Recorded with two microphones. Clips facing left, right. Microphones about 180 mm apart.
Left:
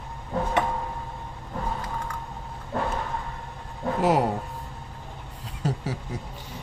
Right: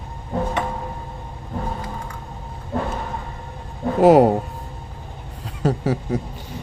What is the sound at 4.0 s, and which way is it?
Speech, 60° right (ahead or behind).